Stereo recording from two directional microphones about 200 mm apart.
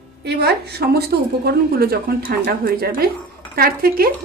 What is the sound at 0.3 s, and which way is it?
Speech, 55° right (ahead or behind).